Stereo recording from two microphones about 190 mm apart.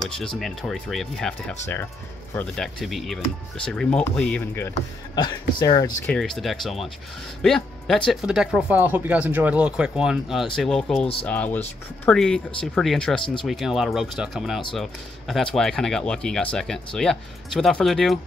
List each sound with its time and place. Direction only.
0.4 s speech: centre (ahead or behind)
5.6 s speech: 25° left (ahead or behind)
6.0 s speech: 5° left (ahead or behind)
13.2 s speech: 25° left (ahead or behind)
13.5 s speech: centre (ahead or behind)